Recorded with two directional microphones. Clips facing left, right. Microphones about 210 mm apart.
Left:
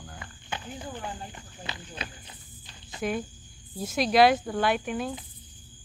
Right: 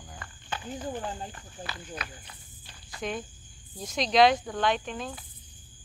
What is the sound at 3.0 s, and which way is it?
Speech, 5° left (ahead or behind).